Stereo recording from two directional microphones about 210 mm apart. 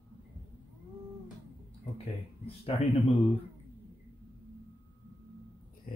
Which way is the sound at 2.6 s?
30° left (ahead or behind).